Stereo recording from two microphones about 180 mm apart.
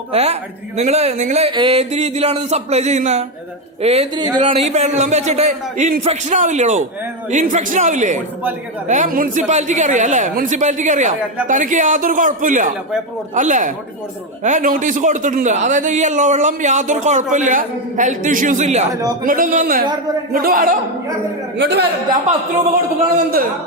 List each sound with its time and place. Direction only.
0.1 s a man's voice: 35° right (ahead or behind)
18.9 s a man's voice: 20° right (ahead or behind)
19.2 s a man's voice: 50° right (ahead or behind)
21.6 s speech: 75° right (ahead or behind)